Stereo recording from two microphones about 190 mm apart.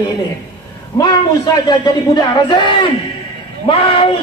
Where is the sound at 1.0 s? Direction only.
20° left (ahead or behind).